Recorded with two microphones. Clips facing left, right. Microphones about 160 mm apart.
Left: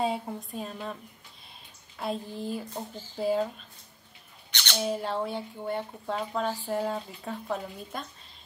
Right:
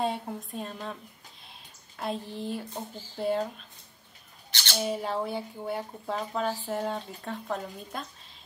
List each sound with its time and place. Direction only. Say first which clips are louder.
0.0 s speech: left 1 dB; centre (ahead or behind)
1.5 s a sound: even; centre (ahead or behind)
3.2 s speech: left 1 dB; centre (ahead or behind)
4.5 s squawk: left 1 dB; 35° right (ahead or behind)
4.7 s speech: even; 5° right (ahead or behind)